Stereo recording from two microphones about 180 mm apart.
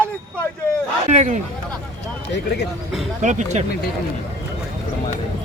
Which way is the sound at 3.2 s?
40° right (ahead or behind).